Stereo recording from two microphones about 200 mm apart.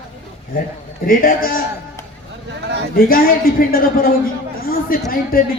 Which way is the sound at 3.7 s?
45° left (ahead or behind).